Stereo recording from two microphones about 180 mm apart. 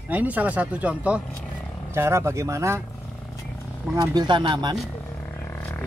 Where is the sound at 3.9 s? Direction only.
25° right (ahead or behind).